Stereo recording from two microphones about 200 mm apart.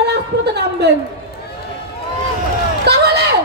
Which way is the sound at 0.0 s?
55° right (ahead or behind).